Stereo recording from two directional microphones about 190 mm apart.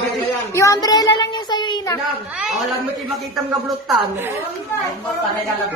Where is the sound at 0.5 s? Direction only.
20° left (ahead or behind).